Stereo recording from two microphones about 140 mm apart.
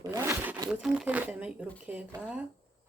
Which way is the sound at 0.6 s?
5° right (ahead or behind).